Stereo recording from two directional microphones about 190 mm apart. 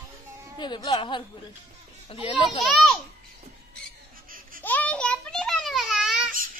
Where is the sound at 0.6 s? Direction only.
20° left (ahead or behind).